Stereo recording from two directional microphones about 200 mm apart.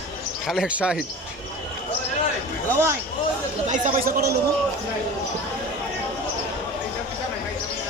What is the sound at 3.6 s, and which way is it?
Speech, 45° right (ahead or behind).